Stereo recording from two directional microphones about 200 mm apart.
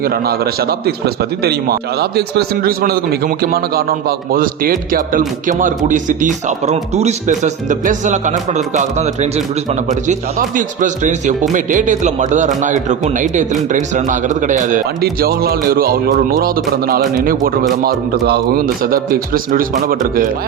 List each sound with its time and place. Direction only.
0.0 s a man's voice: 50° right (ahead or behind)